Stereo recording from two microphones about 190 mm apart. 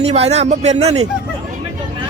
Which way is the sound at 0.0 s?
35° right (ahead or behind).